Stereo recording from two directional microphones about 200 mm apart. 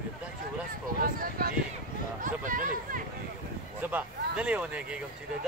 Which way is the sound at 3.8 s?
5° right (ahead or behind).